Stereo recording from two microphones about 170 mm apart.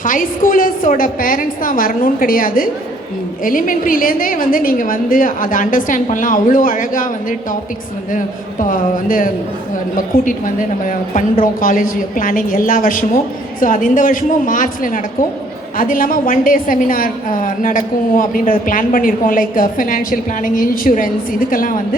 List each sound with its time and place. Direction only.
0.0 s a woman's voice: 55° left (ahead or behind)